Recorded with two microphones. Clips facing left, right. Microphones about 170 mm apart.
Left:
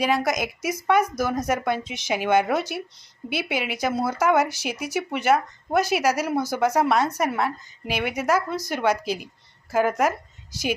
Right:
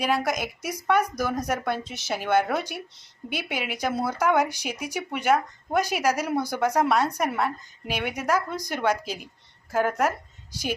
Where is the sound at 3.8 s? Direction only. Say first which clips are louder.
Left 2 dB; 5° left (ahead or behind).